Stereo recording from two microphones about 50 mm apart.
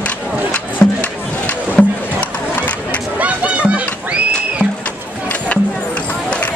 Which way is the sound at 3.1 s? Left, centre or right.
Right.